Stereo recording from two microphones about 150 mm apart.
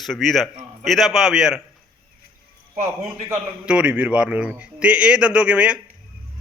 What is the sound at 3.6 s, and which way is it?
A man's voice, 10° right (ahead or behind).